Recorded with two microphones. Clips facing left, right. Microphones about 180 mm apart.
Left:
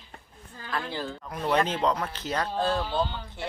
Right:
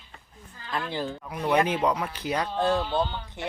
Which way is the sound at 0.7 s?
20° right (ahead or behind).